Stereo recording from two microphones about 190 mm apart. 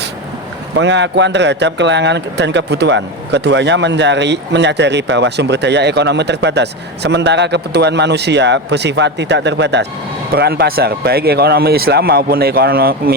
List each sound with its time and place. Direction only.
0.8 s a man's voice: 70° right (ahead or behind)